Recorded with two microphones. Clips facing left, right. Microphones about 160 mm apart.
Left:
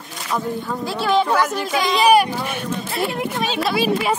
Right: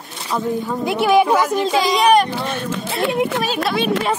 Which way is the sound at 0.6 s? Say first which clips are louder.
Right 4 dB; 20° right (ahead or behind).